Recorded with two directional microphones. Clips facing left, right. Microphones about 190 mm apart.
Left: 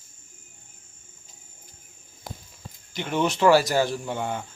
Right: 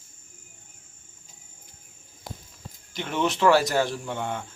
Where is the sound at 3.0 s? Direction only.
Centre (ahead or behind).